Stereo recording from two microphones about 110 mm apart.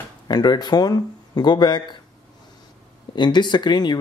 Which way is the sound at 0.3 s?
40° left (ahead or behind).